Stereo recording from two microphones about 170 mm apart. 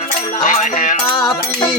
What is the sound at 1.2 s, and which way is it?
Music, 25° left (ahead or behind).